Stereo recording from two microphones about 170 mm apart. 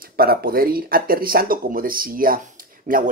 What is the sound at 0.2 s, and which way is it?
Speech, 60° right (ahead or behind).